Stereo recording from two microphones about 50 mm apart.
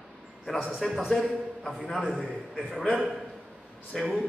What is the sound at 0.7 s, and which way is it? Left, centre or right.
A man's voice, centre.